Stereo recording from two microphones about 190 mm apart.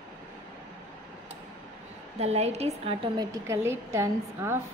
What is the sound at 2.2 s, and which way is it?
A woman's voice, 35° right (ahead or behind).